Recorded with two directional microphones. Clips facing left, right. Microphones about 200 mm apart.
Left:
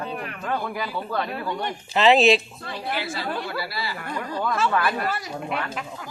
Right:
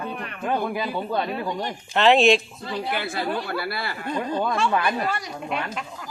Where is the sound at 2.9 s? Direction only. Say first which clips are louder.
Even; 55° right (ahead or behind).